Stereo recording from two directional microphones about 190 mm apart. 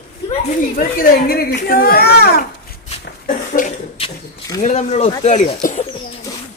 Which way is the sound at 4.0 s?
30° left (ahead or behind).